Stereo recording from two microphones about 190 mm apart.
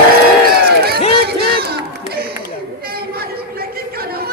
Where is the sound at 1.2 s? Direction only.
55° right (ahead or behind).